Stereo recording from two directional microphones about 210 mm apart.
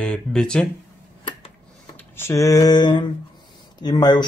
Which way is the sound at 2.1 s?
15° left (ahead or behind).